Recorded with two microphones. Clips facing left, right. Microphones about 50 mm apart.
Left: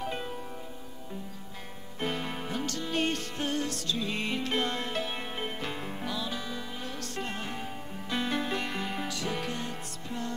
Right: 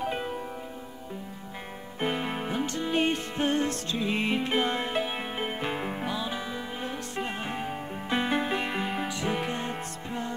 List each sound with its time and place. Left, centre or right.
0.0 s music: centre
2.0 s music: centre